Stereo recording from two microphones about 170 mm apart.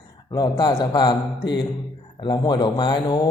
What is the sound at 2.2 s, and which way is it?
Speech, 25° left (ahead or behind).